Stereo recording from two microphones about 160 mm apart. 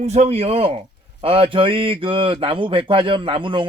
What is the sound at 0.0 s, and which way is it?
Speech, 40° right (ahead or behind).